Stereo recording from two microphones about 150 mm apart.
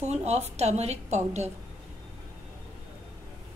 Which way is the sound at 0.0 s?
45° right (ahead or behind).